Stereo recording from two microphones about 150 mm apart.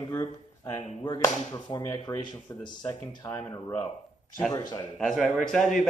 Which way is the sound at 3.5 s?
35° left (ahead or behind).